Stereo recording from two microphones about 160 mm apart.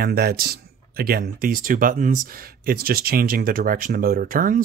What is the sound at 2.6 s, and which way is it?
Speech, 70° right (ahead or behind).